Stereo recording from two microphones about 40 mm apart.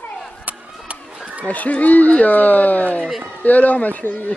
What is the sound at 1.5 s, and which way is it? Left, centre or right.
Speech, left.